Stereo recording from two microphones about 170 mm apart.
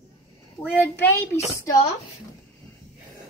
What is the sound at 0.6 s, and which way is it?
Speech, 10° right (ahead or behind).